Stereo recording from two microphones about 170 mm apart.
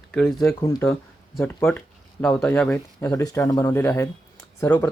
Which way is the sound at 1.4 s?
15° left (ahead or behind).